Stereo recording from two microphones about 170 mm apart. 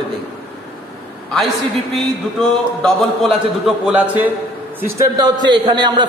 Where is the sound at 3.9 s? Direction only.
10° right (ahead or behind).